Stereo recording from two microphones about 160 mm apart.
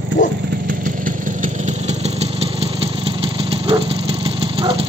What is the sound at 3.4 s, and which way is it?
Dog, 35° right (ahead or behind).